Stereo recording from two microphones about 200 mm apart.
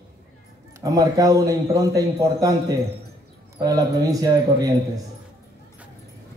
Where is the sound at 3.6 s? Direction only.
20° right (ahead or behind).